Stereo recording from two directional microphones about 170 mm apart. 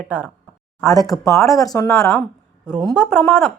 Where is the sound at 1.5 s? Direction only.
Centre (ahead or behind).